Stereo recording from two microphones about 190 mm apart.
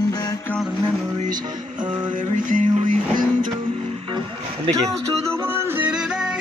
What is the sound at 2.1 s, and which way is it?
Music, 45° right (ahead or behind).